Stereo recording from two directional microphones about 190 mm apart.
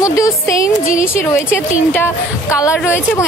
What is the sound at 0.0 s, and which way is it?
A woman's voice, 15° left (ahead or behind).